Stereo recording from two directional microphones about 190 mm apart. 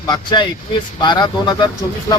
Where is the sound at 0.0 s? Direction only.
20° left (ahead or behind).